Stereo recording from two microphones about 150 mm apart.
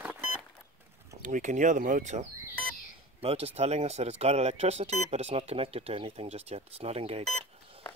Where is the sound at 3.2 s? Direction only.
40° right (ahead or behind).